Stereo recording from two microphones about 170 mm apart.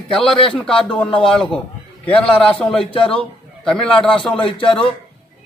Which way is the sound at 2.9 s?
30° left (ahead or behind).